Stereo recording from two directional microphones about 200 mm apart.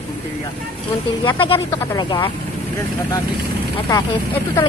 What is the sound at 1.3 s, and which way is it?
Speech, 25° left (ahead or behind).